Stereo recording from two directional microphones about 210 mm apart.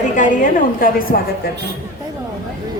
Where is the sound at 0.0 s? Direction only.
40° left (ahead or behind).